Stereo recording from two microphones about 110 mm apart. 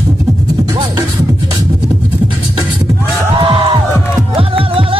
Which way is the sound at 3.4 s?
55° right (ahead or behind).